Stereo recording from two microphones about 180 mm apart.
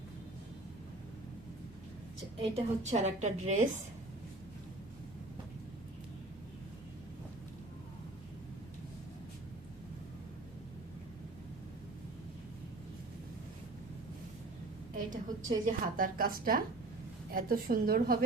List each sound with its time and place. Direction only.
2.4 s a woman's voice: 35° right (ahead or behind)
15.1 s a woman's voice: 45° right (ahead or behind)